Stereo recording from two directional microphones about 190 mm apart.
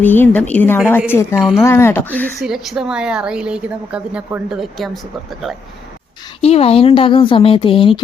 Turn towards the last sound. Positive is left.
turn(degrees=30)  # may be behind; listen again after turning